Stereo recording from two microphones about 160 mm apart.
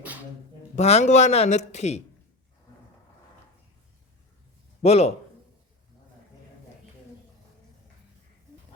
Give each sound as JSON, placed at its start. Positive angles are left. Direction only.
{"t": 0.8, "sound": "speech", "side_deg": 45}
{"t": 4.8, "sound": "speech", "side_deg": 40}